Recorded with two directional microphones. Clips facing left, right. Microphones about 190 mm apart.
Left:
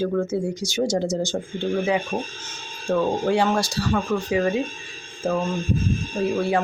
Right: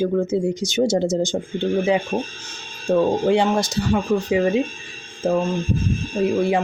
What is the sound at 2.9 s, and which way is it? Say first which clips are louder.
Speech: right 4 dB; 20° right (ahead or behind).